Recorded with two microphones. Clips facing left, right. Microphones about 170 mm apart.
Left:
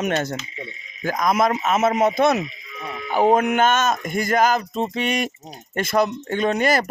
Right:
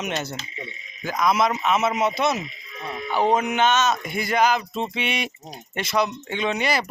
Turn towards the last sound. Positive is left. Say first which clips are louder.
# left 5 dB
turn(degrees=50)  # may be behind; listen again after turning